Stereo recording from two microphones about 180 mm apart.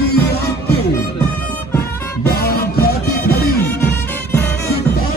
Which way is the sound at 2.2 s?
55° left (ahead or behind).